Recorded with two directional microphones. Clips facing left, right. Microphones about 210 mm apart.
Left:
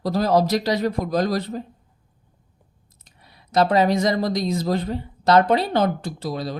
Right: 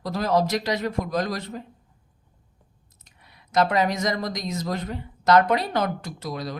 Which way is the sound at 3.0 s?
35° left (ahead or behind).